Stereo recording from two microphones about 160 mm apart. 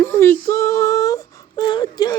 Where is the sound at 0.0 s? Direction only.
15° left (ahead or behind).